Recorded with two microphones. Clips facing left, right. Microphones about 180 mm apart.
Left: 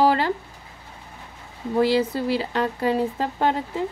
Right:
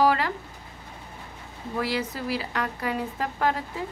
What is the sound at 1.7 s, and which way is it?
Speech, 30° left (ahead or behind).